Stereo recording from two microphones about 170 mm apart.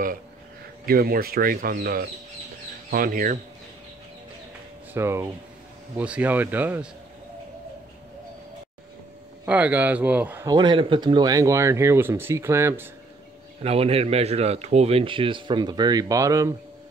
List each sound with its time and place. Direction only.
0.8 s speech: 60° right (ahead or behind)
4.9 s speech: 15° right (ahead or behind)
9.5 s speech: 10° right (ahead or behind)
10.5 s speech: 30° right (ahead or behind)
13.6 s speech: 35° right (ahead or behind); by 16.5 s 20° right (ahead or behind)